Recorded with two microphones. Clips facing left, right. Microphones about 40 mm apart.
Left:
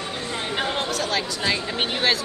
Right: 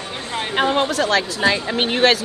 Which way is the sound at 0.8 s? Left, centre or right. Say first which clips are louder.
Right 7 dB; right.